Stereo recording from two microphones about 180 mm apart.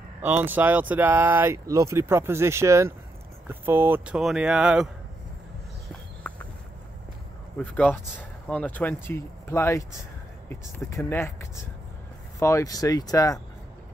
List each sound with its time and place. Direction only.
0.2 s speech: 10° right (ahead or behind)
7.5 s speech: 5° left (ahead or behind)